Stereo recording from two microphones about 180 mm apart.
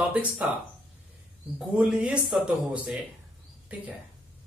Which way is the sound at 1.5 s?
5° right (ahead or behind).